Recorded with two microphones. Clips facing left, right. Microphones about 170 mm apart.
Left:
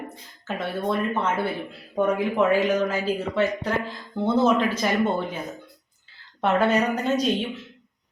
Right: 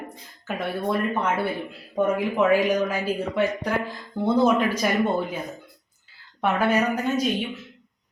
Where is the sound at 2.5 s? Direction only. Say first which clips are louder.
Right 1 dB; 10° right (ahead or behind).